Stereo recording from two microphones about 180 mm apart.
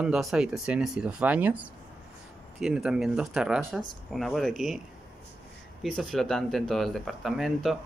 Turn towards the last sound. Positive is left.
turn(degrees=0)  # may be behind; listen again after turning